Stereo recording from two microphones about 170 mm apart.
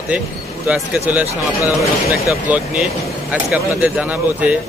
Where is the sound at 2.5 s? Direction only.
5° right (ahead or behind).